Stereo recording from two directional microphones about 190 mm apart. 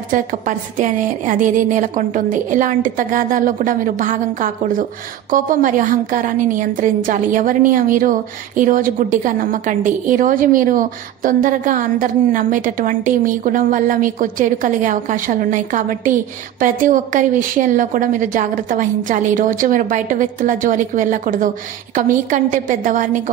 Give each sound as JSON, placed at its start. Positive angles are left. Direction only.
{"t": 0.1, "sound": "a woman's voice", "side_deg": -45}